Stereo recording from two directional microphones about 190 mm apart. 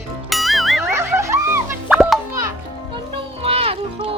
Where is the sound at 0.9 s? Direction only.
15° right (ahead or behind).